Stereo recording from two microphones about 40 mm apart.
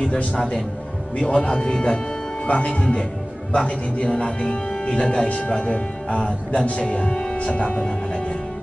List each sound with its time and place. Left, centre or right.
0.0 s speech: left